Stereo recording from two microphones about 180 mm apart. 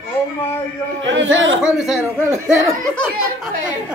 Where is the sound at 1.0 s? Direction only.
90° right.